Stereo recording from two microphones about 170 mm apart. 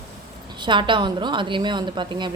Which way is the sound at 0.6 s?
30° right (ahead or behind).